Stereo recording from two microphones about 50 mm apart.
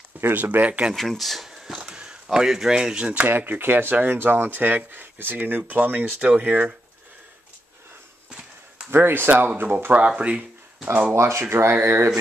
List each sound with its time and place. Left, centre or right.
0.2 s speech: right
0.9 s speech: centre
1.8 s speech: centre
3.1 s speech: right
8.9 s speech: right
10.0 s speech: right
11.1 s speech: right